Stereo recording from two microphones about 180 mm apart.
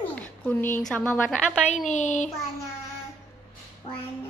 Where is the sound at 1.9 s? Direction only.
40° left (ahead or behind).